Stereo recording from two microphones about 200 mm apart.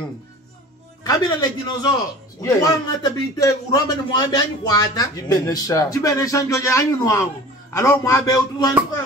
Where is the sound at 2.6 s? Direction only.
20° left (ahead or behind).